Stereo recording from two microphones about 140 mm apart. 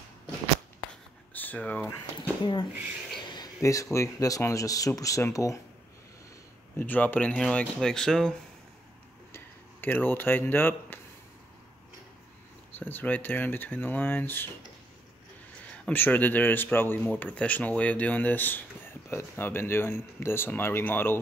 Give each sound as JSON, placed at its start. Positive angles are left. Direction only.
{"t": 1.3, "sound": "speech", "side_deg": 10}
{"t": 2.4, "sound": "speech", "side_deg": 35}
{"t": 6.8, "sound": "speech", "side_deg": 10}
{"t": 9.3, "sound": "speech", "side_deg": 15}
{"t": 12.7, "sound": "speech", "side_deg": 15}
{"t": 15.8, "sound": "speech", "side_deg": 15}